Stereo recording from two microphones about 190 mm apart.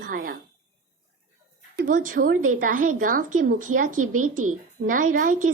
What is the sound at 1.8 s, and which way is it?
Speech, 45° right (ahead or behind).